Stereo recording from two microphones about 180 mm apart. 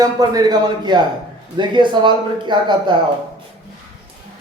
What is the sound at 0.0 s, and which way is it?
A man's voice, 20° right (ahead or behind).